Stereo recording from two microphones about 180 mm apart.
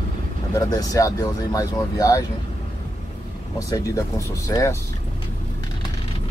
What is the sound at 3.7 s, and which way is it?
Speech, 20° left (ahead or behind).